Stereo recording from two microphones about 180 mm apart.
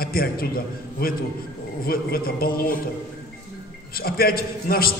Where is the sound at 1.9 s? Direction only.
55° left (ahead or behind).